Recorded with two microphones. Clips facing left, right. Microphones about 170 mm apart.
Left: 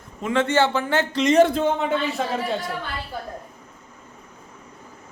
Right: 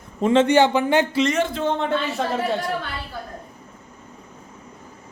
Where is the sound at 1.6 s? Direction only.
5° left (ahead or behind).